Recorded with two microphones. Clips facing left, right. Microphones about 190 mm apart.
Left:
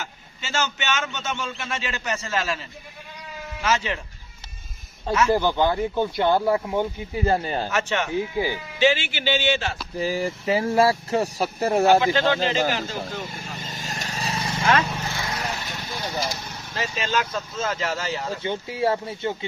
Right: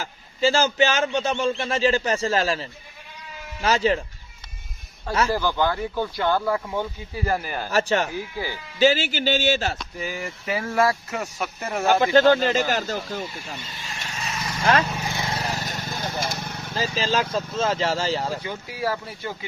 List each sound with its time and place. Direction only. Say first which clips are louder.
0.0 s a man's voice: right 14 dB; 35° right (ahead or behind)
5.3 s speech: left 3 dB; 20° left (ahead or behind)
7.7 s a man's voice: right 7 dB; 35° right (ahead or behind)
8.1 s speech: left 6 dB; 20° left (ahead or behind)
8.8 s a man's voice: right 2 dB; 40° right (ahead or behind)
10.0 s speech: left 9 dB; 35° left (ahead or behind)
11.9 s speech: right 4 dB; 45° right (ahead or behind)
13.2 s speech: even; 45° left (ahead or behind)
13.6 s vehicle: left 4 dB; 45° left (ahead or behind)
14.9 s vehicle: right 1 dB; 15° right (ahead or behind); by 16.6 s 55° right (ahead or behind)
16.7 s a man's voice: right 2 dB; 30° right (ahead or behind)
18.4 s speech: left 4 dB; 25° left (ahead or behind)